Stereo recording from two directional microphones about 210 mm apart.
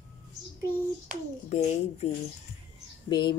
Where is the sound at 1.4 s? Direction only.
30° left (ahead or behind).